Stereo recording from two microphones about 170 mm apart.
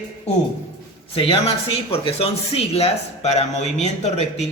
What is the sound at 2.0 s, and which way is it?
A man's voice, 35° left (ahead or behind).